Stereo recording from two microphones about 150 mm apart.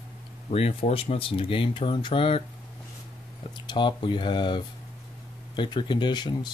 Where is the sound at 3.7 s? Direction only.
30° left (ahead or behind).